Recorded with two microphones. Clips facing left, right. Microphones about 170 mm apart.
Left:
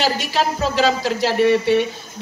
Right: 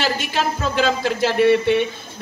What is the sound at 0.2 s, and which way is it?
Speech, 50° right (ahead or behind).